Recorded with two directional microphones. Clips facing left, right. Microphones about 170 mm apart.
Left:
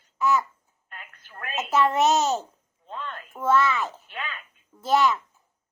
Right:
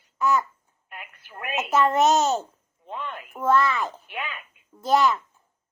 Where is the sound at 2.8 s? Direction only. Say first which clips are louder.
Right 2 dB; 15° right (ahead or behind).